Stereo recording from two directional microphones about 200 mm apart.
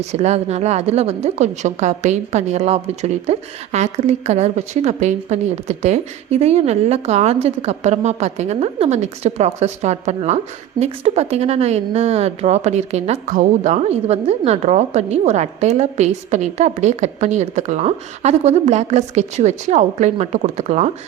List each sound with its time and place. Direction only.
0.0 s a woman's voice: 35° right (ahead or behind)